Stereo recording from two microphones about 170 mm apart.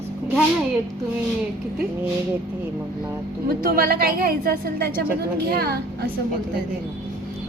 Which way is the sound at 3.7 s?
60° right (ahead or behind).